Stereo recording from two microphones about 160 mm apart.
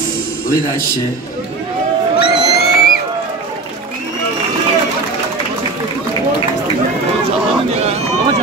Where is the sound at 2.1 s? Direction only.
85° left.